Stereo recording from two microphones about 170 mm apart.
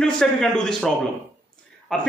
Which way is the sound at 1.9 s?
5° left (ahead or behind).